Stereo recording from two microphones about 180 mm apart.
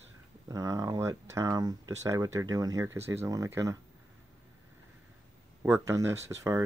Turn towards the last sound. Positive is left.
turn(degrees=-15)  # may be behind; listen again after turning